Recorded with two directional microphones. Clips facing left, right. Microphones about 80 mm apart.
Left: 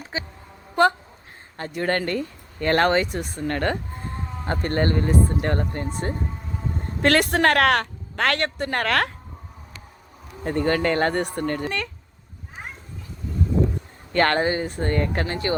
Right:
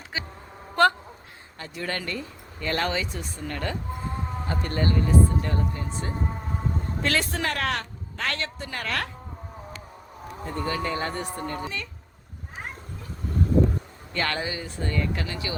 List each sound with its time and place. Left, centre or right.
0.1 s a woman's voice: left
0.8 s a woman's voice: centre
1.5 s speech: left
7.0 s a woman's voice: left
10.4 s a woman's voice: left
14.1 s speech: left